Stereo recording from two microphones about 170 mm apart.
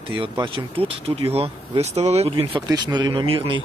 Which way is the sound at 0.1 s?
30° right (ahead or behind).